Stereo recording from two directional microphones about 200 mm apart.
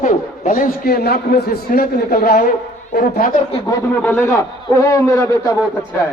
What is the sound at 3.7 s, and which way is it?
A man's voice, 10° left (ahead or behind).